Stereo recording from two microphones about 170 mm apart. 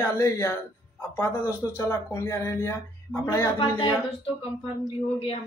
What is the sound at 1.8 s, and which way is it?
Speech, 15° left (ahead or behind).